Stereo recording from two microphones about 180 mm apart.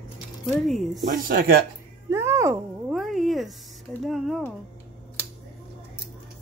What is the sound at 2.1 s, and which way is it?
Music, 15° right (ahead or behind).